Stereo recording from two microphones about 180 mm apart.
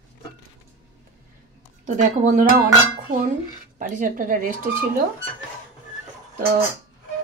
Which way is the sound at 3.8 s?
45° right (ahead or behind).